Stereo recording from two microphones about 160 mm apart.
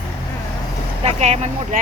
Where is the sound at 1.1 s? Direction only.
40° right (ahead or behind).